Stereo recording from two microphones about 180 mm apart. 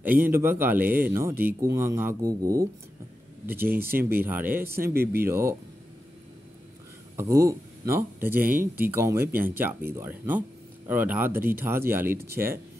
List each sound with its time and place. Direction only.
0.0 s speech: 10° right (ahead or behind)
7.2 s speech: 15° right (ahead or behind)